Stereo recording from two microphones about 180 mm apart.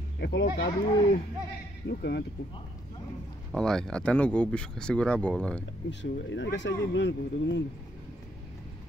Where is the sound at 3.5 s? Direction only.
5° left (ahead or behind).